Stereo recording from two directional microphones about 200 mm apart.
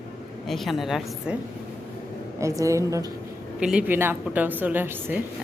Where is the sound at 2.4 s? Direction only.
15° right (ahead or behind).